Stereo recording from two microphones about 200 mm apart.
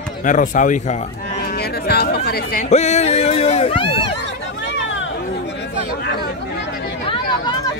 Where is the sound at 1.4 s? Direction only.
50° left (ahead or behind).